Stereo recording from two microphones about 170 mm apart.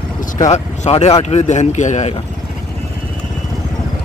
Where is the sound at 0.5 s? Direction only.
40° left (ahead or behind).